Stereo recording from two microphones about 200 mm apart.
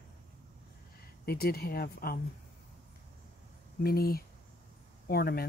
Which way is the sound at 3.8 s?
50° left (ahead or behind).